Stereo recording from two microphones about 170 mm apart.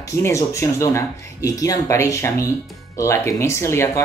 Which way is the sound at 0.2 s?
15° left (ahead or behind).